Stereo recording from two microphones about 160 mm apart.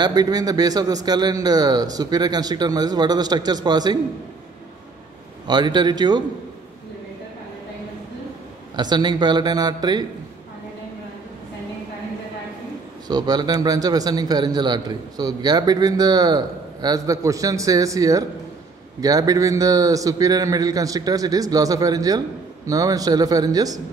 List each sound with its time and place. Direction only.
0.0 s a man's voice: 25° right (ahead or behind)
5.5 s a man's voice: 25° right (ahead or behind)
8.7 s a man's voice: 25° right (ahead or behind)
13.1 s a man's voice: 25° right (ahead or behind)